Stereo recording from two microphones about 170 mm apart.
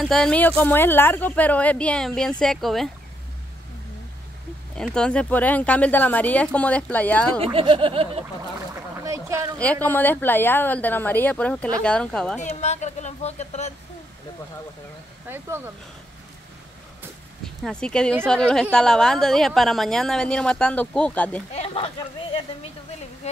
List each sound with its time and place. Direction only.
0.0 s a woman's voice: centre (ahead or behind)
4.7 s speech: 5° left (ahead or behind)
7.4 s speech: 30° right (ahead or behind)
8.9 s a sound: 15° right (ahead or behind)
9.8 s a woman's voice: 10° left (ahead or behind)
12.4 s speech: 40° left (ahead or behind)
15.2 s speech: 15° right (ahead or behind)
17.6 s a woman's voice: 5° left (ahead or behind)
21.5 s speech: 35° left (ahead or behind)